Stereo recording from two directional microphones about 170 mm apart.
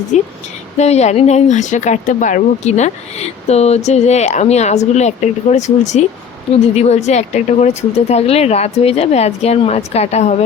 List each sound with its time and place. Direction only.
0.1 s a woman's voice: 45° left (ahead or behind)